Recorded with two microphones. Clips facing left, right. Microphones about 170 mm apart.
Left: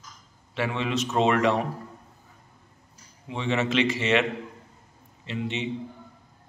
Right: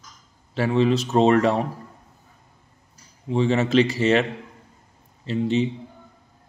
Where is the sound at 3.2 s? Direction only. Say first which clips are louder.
Right 6 dB; 35° right (ahead or behind).